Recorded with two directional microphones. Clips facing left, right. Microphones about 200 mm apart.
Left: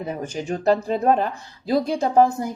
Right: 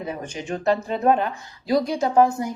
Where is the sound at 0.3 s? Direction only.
35° left (ahead or behind).